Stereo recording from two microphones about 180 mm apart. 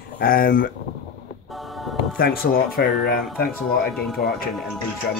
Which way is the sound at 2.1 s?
55° left (ahead or behind).